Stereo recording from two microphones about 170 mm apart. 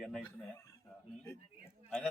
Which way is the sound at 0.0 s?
Centre (ahead or behind).